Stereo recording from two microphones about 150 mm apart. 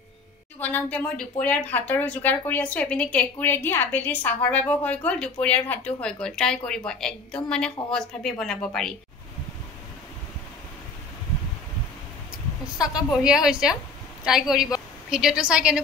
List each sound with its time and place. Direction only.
0.6 s a woman's voice: 10° left (ahead or behind)
12.7 s a woman's voice: 25° left (ahead or behind)
13.1 s a woman's voice: 5° right (ahead or behind)